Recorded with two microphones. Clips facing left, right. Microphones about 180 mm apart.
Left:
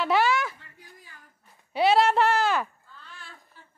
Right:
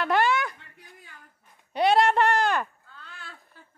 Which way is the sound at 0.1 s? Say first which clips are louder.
Even; centre (ahead or behind).